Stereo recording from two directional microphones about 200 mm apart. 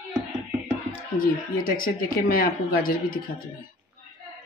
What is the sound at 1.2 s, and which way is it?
Speech, 45° left (ahead or behind).